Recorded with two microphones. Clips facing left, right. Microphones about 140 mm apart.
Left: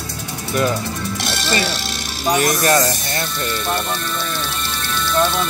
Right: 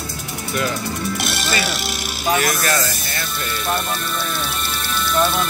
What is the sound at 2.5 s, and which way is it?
Speech, 40° left (ahead or behind).